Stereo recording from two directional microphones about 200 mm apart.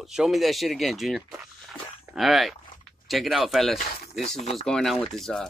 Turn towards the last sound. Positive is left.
turn(degrees=0)  # may be behind; listen again after turning